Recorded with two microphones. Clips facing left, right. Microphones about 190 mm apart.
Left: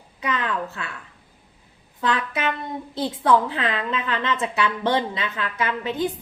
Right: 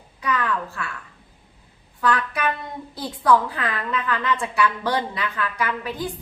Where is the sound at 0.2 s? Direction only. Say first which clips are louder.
Right 1 dB; 20° left (ahead or behind).